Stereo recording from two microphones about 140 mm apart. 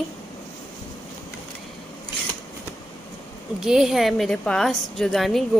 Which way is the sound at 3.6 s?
5° right (ahead or behind).